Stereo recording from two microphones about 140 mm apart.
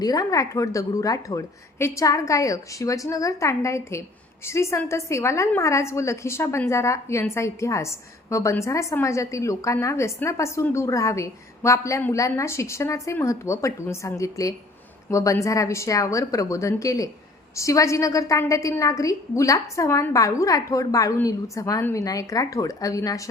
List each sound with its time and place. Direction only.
0.0 s a woman's voice: 25° left (ahead or behind)